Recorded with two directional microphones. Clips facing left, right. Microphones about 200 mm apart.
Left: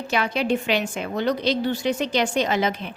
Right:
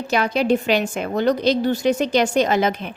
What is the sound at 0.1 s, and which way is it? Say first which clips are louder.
A woman's voice: right 4 dB; 40° right (ahead or behind).